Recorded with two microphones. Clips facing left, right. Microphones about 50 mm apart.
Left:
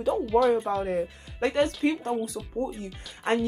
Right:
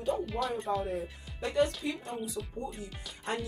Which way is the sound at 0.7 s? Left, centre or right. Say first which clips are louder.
Left 5 dB; left.